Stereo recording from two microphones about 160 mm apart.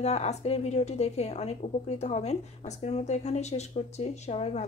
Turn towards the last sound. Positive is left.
turn(degrees=40)  # may be behind; listen again after turning